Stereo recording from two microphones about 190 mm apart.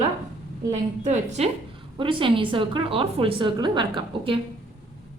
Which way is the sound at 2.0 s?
25° right (ahead or behind).